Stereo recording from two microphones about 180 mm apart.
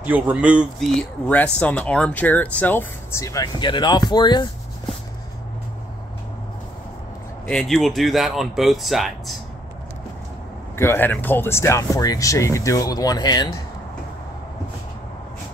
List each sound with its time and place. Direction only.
0.0 s speech: 10° right (ahead or behind)
1.3 s speech: 5° left (ahead or behind); by 4.5 s 25° left (ahead or behind)
7.4 s speech: 5° left (ahead or behind)
10.8 s speech: 10° left (ahead or behind)